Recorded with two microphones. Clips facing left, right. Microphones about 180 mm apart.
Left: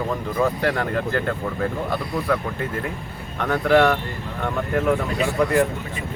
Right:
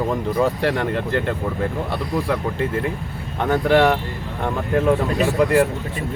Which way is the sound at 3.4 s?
25° right (ahead or behind).